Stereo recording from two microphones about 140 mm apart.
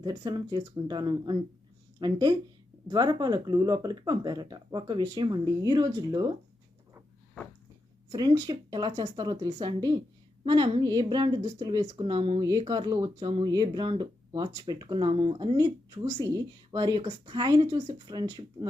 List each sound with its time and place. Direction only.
0.0 s speech: 30° right (ahead or behind)
8.1 s speech: 30° right (ahead or behind)